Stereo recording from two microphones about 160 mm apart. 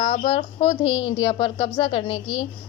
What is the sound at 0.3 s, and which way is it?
A woman's voice, 35° left (ahead or behind).